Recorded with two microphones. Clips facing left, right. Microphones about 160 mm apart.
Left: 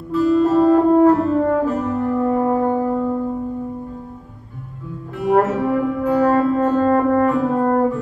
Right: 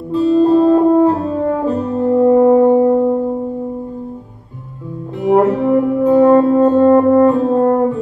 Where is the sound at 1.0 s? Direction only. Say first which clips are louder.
Even; 25° right (ahead or behind).